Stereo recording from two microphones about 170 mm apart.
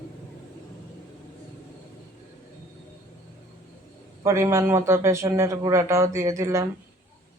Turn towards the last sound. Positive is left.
turn(degrees=-15)  # may be behind; listen again after turning